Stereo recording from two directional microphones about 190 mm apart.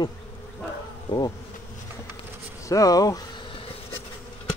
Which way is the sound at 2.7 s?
20° left (ahead or behind).